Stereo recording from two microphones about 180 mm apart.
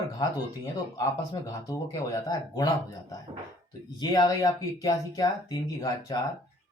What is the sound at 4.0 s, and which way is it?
Speech, 20° left (ahead or behind).